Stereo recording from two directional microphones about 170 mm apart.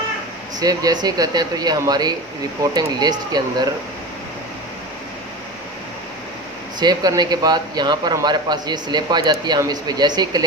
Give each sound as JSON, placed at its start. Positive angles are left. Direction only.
{"t": 0.6, "sound": "a man's voice", "side_deg": -20}
{"t": 6.8, "sound": "a man's voice", "side_deg": -25}